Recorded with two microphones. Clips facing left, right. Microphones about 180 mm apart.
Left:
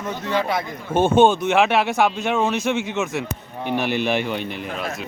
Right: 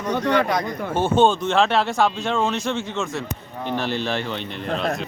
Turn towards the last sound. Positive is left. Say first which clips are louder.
# right 2 dB
turn(degrees=10)  # may be behind; listen again after turning